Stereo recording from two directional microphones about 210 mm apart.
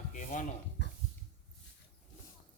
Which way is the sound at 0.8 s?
55° left (ahead or behind).